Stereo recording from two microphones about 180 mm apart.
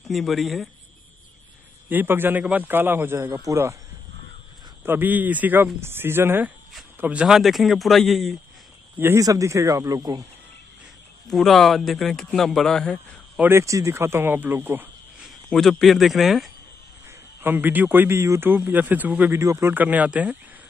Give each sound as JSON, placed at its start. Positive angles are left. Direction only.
{"t": 0.1, "sound": "a man's voice", "side_deg": 0}
{"t": 1.9, "sound": "speech", "side_deg": -10}
{"t": 4.8, "sound": "a man's voice", "side_deg": -10}
{"t": 9.0, "sound": "speech", "side_deg": -15}
{"t": 11.2, "sound": "a man's voice", "side_deg": 0}
{"t": 13.4, "sound": "speech", "side_deg": -15}
{"t": 15.5, "sound": "a man's voice", "side_deg": 0}
{"t": 17.4, "sound": "speech", "side_deg": -10}